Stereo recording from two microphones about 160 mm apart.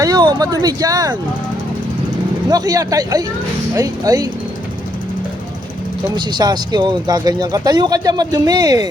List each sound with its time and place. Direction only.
0.0 s speech: 25° right (ahead or behind)
2.5 s speech: 25° right (ahead or behind)
6.1 s speech: 25° right (ahead or behind)